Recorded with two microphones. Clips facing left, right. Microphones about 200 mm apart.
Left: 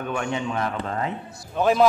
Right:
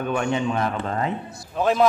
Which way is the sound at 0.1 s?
35° right (ahead or behind).